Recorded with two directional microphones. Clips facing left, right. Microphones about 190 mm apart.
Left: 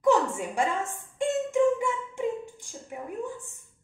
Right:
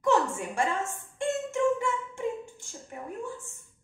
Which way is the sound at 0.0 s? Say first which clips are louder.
Left 2 dB; 15° left (ahead or behind).